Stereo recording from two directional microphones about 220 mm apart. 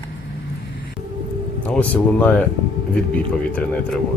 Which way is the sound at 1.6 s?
5° left (ahead or behind).